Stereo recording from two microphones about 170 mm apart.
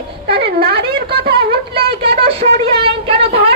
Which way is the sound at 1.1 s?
70° right (ahead or behind).